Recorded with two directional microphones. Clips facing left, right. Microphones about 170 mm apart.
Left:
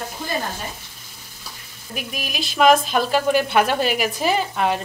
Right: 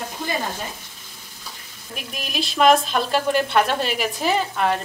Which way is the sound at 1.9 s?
5° left (ahead or behind).